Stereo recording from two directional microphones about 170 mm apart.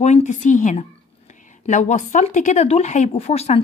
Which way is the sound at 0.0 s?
45° left (ahead or behind).